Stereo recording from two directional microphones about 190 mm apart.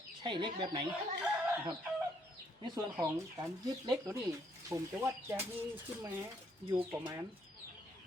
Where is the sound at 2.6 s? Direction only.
15° right (ahead or behind).